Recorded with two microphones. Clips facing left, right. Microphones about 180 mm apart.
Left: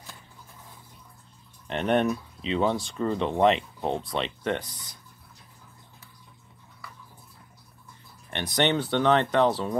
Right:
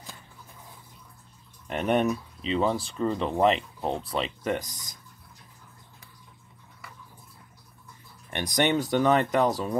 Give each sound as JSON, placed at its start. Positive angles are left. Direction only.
{"t": 1.7, "sound": "speech", "side_deg": -5}
{"t": 8.3, "sound": "speech", "side_deg": -10}